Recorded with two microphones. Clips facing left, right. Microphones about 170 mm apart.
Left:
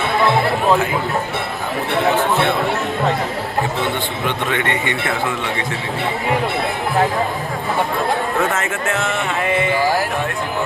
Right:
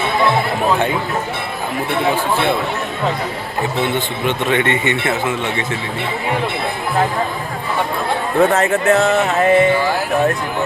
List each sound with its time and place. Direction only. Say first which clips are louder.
3.9 s speech: right 3 dB; 20° right (ahead or behind)
8.4 s speech: right 6 dB; 35° right (ahead or behind)